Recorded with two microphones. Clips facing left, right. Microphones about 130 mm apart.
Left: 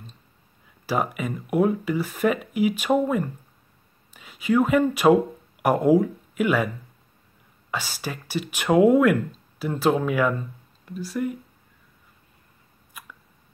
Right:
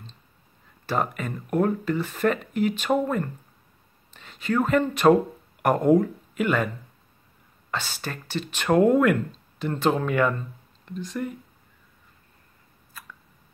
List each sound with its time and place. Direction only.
0.8 s speech: 10° left (ahead or behind)
7.7 s speech: 10° left (ahead or behind)
12.9 s a sound: 20° left (ahead or behind)